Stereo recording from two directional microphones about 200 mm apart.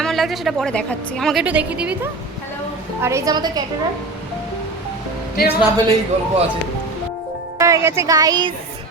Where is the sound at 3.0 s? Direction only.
15° right (ahead or behind).